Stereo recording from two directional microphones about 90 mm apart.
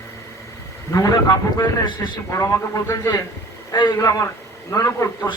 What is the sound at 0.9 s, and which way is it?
A man's voice, 45° left (ahead or behind).